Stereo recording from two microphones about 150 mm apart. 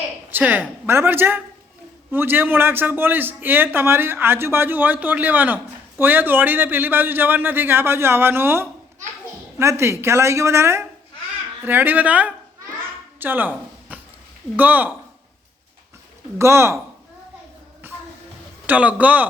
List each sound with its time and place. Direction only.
0.3 s a woman's voice: 10° right (ahead or behind)
16.4 s a man's voice: 20° right (ahead or behind)
17.8 s a sound: 15° right (ahead or behind)
18.6 s a man's voice: 10° right (ahead or behind)